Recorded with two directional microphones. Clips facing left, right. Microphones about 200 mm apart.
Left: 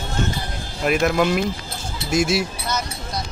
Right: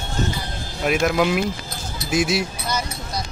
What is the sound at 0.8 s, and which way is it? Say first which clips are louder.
Speech: left 1 dB; centre (ahead or behind).